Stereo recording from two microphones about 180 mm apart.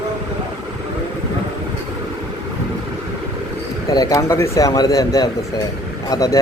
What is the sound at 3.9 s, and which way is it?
Speech, 20° left (ahead or behind).